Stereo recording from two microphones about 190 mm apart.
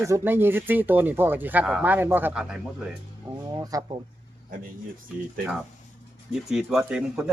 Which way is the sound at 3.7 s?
20° right (ahead or behind).